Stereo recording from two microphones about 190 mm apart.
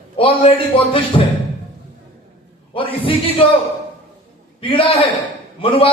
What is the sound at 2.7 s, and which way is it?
Speech, 30° left (ahead or behind).